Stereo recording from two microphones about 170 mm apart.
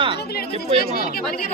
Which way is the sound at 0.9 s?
60° left (ahead or behind).